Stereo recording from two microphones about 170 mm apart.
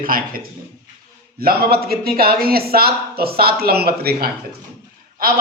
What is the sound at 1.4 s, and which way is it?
Speech, 65° right (ahead or behind).